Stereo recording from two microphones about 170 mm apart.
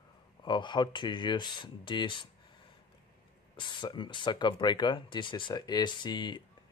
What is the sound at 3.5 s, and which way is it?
Speech, 30° left (ahead or behind).